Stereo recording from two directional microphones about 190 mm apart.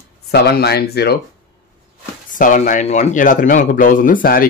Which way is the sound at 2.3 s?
45° left (ahead or behind).